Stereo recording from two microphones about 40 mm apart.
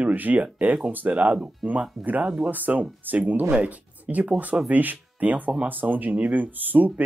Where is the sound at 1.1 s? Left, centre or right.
Right.